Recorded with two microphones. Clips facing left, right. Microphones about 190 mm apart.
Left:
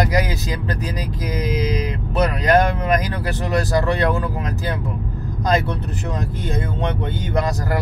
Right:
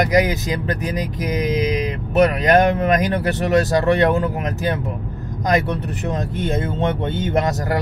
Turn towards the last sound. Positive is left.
turn(degrees=-20)  # may be behind; listen again after turning